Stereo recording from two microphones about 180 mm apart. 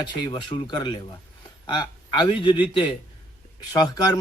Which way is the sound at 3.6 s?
20° left (ahead or behind).